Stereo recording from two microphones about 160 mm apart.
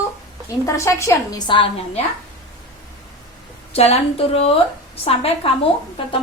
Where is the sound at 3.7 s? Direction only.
40° left (ahead or behind).